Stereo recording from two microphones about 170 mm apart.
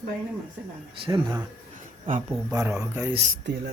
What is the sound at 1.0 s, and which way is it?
Speech, 20° right (ahead or behind).